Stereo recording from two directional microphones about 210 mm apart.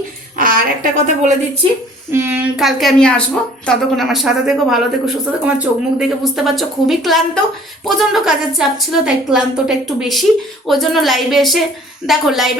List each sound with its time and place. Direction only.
0.3 s a woman's voice: 40° right (ahead or behind)
2.0 s a woman's voice: 10° right (ahead or behind)